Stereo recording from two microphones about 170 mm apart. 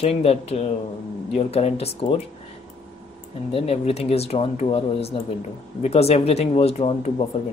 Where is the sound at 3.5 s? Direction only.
35° left (ahead or behind).